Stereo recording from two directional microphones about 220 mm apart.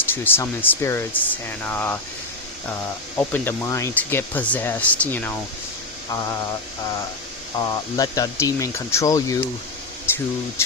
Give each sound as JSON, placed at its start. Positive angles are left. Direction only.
{"t": 0.1, "sound": "speech", "side_deg": 10}
{"t": 3.2, "sound": "speech", "side_deg": 10}
{"t": 7.6, "sound": "speech", "side_deg": 20}